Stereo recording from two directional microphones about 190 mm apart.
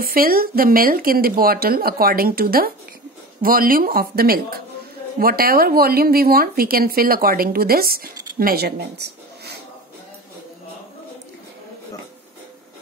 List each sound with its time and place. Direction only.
0.0 s speech: 50° right (ahead or behind)